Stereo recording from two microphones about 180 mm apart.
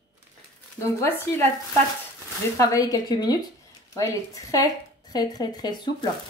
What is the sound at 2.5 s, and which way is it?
Speech, 20° left (ahead or behind).